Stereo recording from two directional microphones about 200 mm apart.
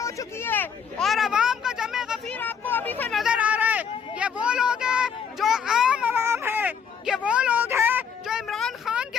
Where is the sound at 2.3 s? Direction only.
10° left (ahead or behind).